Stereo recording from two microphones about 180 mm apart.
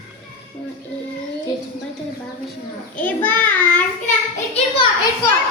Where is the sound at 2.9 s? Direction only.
10° left (ahead or behind).